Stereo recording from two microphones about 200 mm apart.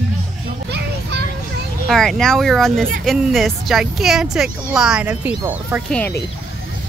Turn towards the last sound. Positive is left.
turn(degrees=5)  # may be behind; listen again after turning